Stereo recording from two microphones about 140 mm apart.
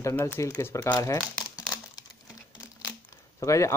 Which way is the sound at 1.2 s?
5° right (ahead or behind).